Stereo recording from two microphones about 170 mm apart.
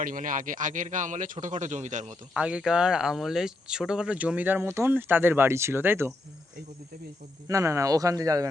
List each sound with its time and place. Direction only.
0.0 s a man's voice: 50° right (ahead or behind)
2.3 s speech: 5° right (ahead or behind)
7.4 s speech: 15° right (ahead or behind)